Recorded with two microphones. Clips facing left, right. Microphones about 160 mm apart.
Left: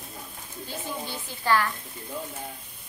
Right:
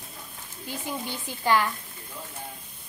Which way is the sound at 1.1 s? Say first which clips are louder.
Right 1 dB; 15° right (ahead or behind).